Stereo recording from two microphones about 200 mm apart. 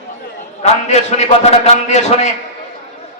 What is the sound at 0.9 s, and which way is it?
A man's voice, 35° left (ahead or behind).